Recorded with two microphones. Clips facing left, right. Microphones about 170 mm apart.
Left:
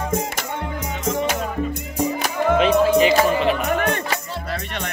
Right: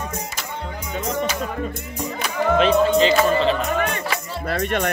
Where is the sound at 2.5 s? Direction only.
10° left (ahead or behind).